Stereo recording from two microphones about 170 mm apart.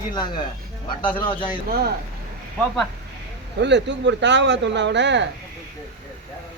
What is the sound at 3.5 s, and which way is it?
Speech, 90° right.